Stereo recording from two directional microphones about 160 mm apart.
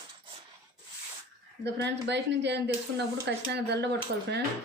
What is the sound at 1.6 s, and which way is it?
A woman's voice, 90° right.